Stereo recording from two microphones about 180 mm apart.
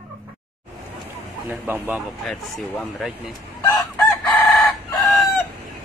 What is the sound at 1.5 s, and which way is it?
Speech, 10° right (ahead or behind).